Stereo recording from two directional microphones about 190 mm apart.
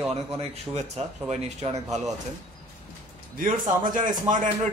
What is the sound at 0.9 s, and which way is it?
Speech, 35° right (ahead or behind).